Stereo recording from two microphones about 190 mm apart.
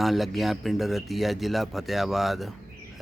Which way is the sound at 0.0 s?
Centre (ahead or behind).